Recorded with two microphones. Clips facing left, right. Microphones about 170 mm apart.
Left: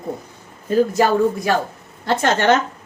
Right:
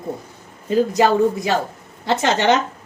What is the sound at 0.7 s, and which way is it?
Speech, 20° right (ahead or behind).